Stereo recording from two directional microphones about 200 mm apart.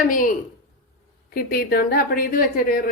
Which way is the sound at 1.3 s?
50° left (ahead or behind).